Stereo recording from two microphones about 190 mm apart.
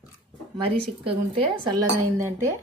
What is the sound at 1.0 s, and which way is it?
Dishes, 25° right (ahead or behind).